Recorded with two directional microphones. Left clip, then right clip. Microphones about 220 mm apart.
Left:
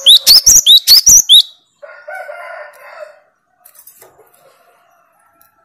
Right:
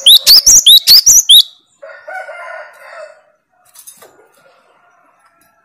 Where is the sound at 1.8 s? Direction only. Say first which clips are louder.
Right 2 dB; 45° right (ahead or behind).